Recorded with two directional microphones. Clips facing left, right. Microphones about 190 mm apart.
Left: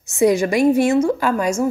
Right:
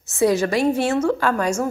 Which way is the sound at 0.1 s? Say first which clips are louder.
Left 2 dB; 15° left (ahead or behind).